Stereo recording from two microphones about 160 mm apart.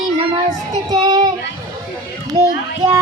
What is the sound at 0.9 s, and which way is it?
Child singing, 25° right (ahead or behind).